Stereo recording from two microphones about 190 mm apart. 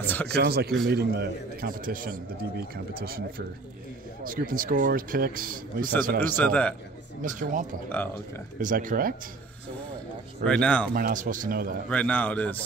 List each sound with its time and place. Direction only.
0.0 s speech: 10° left (ahead or behind)
0.4 s a man's voice: 55° right (ahead or behind)
6.3 s a man's voice: 5° left (ahead or behind)
7.2 s a man's voice: 45° right (ahead or behind)
10.4 s speech: 5° left (ahead or behind)
11.0 s a man's voice: 45° right (ahead or behind)
11.9 s a man's voice: 5° left (ahead or behind)